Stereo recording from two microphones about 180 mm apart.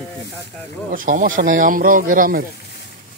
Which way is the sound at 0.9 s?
50° right (ahead or behind).